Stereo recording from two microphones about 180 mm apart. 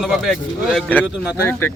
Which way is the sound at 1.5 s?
10° left (ahead or behind).